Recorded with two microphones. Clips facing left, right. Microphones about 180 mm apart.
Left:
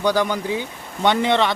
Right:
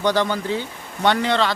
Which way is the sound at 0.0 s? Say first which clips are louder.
Even; 10° left (ahead or behind).